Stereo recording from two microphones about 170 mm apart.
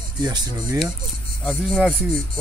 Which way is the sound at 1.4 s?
Centre (ahead or behind).